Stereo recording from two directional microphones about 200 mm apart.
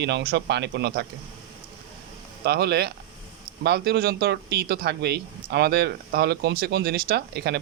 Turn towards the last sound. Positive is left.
turn(degrees=-55)  # may be behind; listen again after turning